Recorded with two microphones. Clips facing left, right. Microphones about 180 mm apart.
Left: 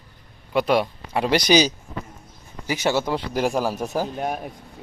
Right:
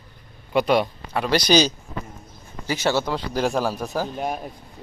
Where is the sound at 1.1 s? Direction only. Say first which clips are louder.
Left 1 dB; 20° left (ahead or behind).